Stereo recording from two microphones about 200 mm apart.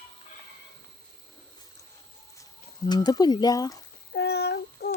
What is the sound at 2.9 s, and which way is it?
Speech, 20° left (ahead or behind).